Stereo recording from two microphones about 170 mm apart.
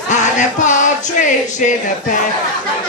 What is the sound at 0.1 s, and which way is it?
Music, 45° left (ahead or behind).